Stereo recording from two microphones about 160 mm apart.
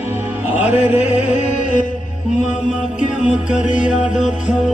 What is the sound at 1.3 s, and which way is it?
Music, 50° left (ahead or behind).